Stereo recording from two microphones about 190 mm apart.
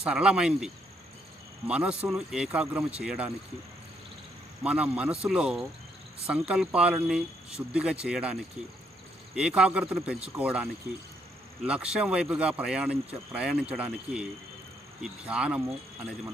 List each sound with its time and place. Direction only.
0.0 s speech: 5° right (ahead or behind)
4.6 s a man's voice: 5° right (ahead or behind)